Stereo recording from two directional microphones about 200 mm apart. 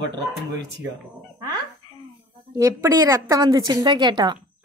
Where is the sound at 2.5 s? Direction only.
15° right (ahead or behind).